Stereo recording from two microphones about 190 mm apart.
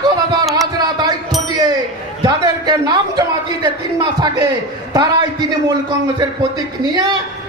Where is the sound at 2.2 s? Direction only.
20° right (ahead or behind).